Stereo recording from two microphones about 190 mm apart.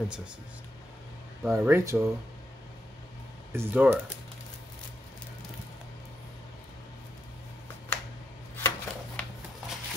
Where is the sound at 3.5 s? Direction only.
10° right (ahead or behind).